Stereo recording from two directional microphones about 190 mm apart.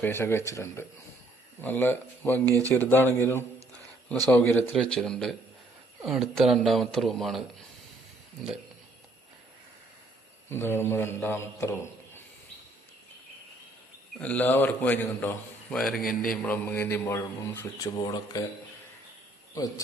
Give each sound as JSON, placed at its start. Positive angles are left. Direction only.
{"t": 0.0, "sound": "a man's voice", "side_deg": 10}
{"t": 10.5, "sound": "a man's voice", "side_deg": 10}
{"t": 14.2, "sound": "a man's voice", "side_deg": 10}
{"t": 16.0, "sound": "a man's voice", "side_deg": 50}
{"t": 16.4, "sound": "a man's voice", "side_deg": 10}
{"t": 19.5, "sound": "a man's voice", "side_deg": 20}